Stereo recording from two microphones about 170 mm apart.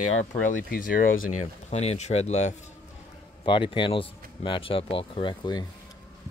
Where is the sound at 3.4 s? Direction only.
30° left (ahead or behind).